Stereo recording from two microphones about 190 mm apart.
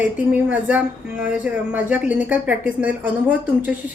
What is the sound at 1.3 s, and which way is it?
A woman's voice, 10° right (ahead or behind).